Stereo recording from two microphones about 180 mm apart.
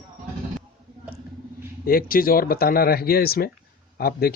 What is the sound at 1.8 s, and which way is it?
Speech, 55° left (ahead or behind).